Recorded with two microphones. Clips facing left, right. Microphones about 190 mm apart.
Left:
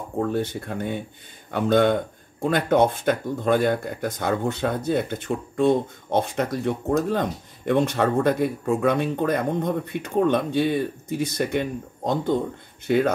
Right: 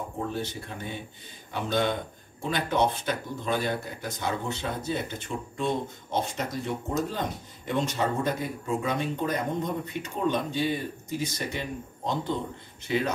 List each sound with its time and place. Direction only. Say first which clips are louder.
0.2 s speech: left 9 dB; 55° left (ahead or behind)